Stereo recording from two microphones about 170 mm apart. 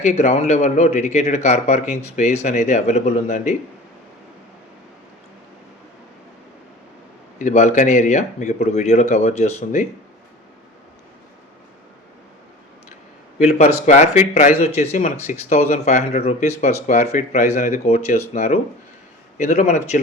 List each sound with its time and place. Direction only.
0.0 s speech: 45° left (ahead or behind)
7.3 s speech: 45° left (ahead or behind)
13.4 s speech: 40° left (ahead or behind)